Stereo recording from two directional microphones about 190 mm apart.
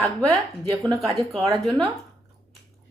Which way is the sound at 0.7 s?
15° right (ahead or behind).